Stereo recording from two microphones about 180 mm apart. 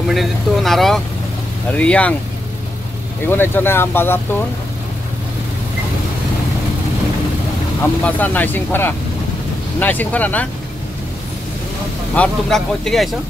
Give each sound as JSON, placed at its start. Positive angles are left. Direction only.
{"t": 0.1, "sound": "speech", "side_deg": 0}
{"t": 3.3, "sound": "speech", "side_deg": 10}
{"t": 8.0, "sound": "speech", "side_deg": 10}
{"t": 12.2, "sound": "speech", "side_deg": 5}